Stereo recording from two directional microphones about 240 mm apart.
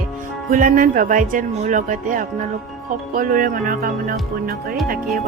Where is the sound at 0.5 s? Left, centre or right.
Right.